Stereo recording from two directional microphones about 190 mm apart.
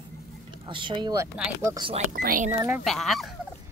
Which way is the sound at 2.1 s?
45° right (ahead or behind).